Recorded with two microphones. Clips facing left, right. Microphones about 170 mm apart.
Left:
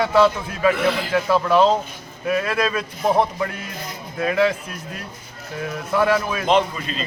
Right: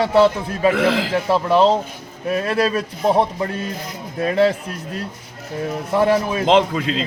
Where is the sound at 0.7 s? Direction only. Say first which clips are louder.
Right 3 dB; 90° right.